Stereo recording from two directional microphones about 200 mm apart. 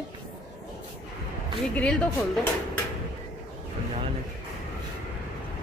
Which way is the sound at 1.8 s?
5° left (ahead or behind).